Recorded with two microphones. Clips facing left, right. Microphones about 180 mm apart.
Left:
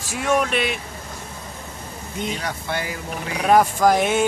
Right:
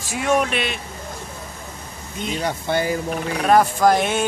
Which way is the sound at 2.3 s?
25° right (ahead or behind).